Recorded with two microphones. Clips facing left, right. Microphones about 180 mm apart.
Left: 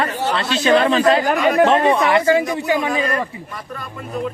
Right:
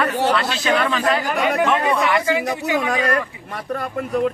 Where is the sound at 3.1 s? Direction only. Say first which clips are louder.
Right 1 dB; 65° right (ahead or behind).